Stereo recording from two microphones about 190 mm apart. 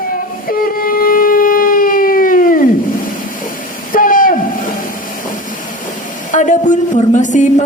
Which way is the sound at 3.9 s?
45° left (ahead or behind).